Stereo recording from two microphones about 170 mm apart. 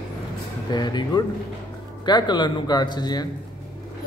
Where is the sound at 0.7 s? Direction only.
25° left (ahead or behind).